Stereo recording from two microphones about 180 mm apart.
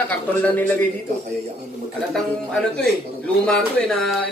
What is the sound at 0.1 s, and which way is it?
Speech, 10° left (ahead or behind).